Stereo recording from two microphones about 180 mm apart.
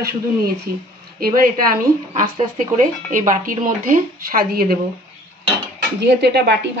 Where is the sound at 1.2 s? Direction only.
55° right (ahead or behind).